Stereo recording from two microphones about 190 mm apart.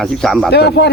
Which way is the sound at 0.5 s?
60° left (ahead or behind).